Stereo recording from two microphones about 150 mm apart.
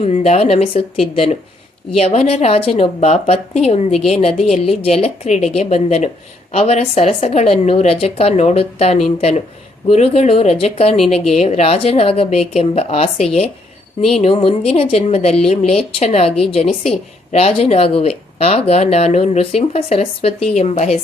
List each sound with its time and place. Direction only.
0.0 s speech: 45° left (ahead or behind)